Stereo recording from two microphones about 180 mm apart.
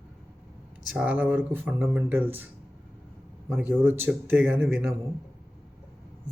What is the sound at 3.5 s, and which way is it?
Speech, 10° right (ahead or behind).